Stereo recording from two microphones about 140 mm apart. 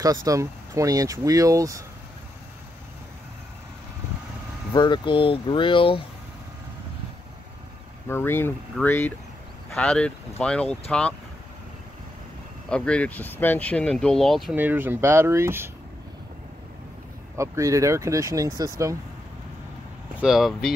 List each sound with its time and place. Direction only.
0.0 s speech: 25° right (ahead or behind)
4.7 s speech: 35° left (ahead or behind)
8.1 s speech: 15° left (ahead or behind)
12.6 s speech: 5° left (ahead or behind)
14.5 s speech: 15° right (ahead or behind)
17.4 s speech: 20° right (ahead or behind)
20.2 s speech: 5° right (ahead or behind)